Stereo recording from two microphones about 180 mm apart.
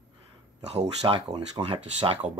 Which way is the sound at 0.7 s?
35° right (ahead or behind).